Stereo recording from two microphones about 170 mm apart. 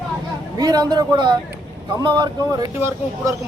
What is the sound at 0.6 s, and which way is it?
A man's voice, 20° right (ahead or behind).